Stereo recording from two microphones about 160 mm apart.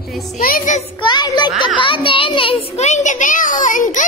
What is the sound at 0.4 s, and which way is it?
Speech, 65° left (ahead or behind).